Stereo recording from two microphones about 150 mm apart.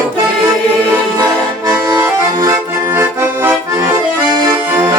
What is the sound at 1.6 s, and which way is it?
Accordion, 25° right (ahead or behind).